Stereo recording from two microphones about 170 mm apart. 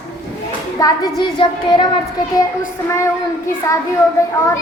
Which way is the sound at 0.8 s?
20° left (ahead or behind).